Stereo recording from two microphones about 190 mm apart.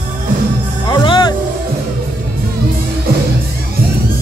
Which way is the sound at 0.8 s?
25° left (ahead or behind).